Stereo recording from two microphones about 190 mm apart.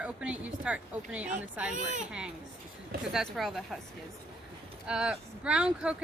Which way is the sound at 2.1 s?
5° right (ahead or behind).